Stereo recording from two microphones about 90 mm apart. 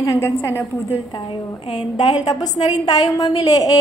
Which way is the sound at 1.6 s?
90° left.